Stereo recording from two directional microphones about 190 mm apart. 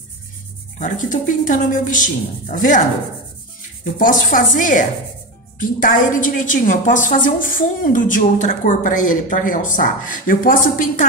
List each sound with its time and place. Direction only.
0.7 s a woman's voice: 40° left (ahead or behind)
3.8 s a woman's voice: 45° left (ahead or behind)